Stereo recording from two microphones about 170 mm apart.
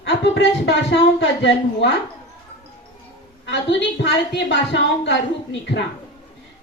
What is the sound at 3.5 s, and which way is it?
Speech, 90° left.